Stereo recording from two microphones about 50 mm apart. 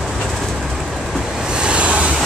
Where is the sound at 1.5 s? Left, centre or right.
Right.